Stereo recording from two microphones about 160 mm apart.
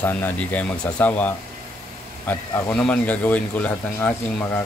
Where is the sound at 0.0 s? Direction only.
10° left (ahead or behind).